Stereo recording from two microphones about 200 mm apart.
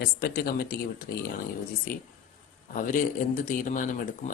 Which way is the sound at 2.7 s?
40° left (ahead or behind).